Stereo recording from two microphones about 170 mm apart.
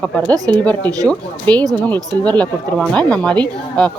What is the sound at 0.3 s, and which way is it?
Speech, 20° right (ahead or behind).